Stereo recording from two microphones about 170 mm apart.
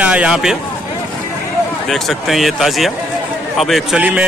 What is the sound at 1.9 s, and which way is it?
A man's voice, centre (ahead or behind).